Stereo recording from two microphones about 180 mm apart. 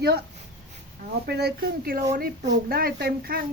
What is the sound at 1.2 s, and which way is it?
Speech, 65° right (ahead or behind).